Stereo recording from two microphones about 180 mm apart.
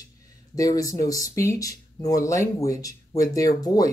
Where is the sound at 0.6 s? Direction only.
20° left (ahead or behind).